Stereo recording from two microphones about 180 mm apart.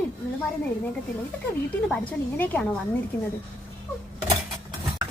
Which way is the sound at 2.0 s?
10° left (ahead or behind).